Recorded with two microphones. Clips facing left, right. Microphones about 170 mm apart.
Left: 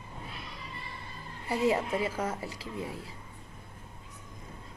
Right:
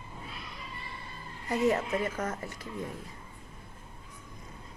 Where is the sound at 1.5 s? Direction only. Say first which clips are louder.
Even; 10° left (ahead or behind).